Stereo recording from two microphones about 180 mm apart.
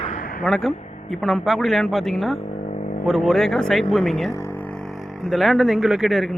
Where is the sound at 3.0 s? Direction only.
Centre (ahead or behind).